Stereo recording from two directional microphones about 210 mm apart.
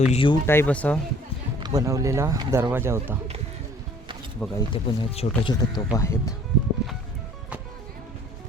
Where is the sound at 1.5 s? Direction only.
20° right (ahead or behind).